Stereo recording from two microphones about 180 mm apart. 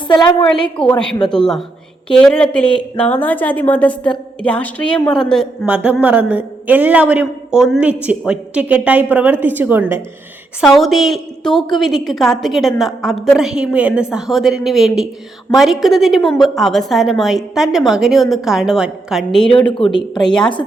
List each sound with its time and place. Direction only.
0.1 s a woman's voice: 25° left (ahead or behind)
0.9 s a woman's voice: 5° left (ahead or behind)
5.6 s a man's voice: 10° right (ahead or behind)
10.6 s a woman's voice: centre (ahead or behind)